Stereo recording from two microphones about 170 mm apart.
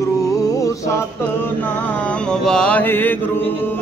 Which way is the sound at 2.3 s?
5° left (ahead or behind).